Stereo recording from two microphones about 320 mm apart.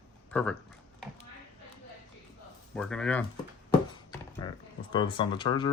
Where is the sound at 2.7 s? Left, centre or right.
Centre.